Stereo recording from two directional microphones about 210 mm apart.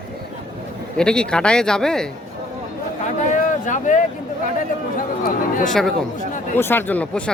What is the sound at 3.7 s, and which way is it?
Speech, 35° left (ahead or behind).